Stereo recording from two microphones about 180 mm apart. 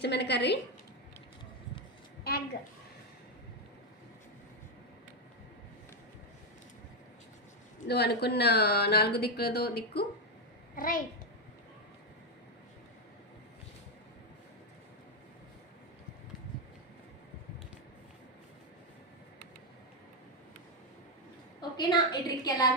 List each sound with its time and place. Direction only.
0.0 s a woman's voice: 70° left (ahead or behind)
7.9 s a child's voice: 65° left (ahead or behind)
21.6 s a woman's voice: 25° left (ahead or behind)